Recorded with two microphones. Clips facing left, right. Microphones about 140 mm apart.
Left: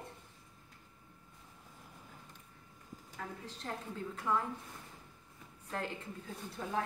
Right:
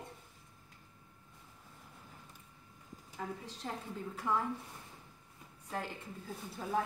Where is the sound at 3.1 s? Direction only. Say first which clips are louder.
Right 3 dB; 15° right (ahead or behind).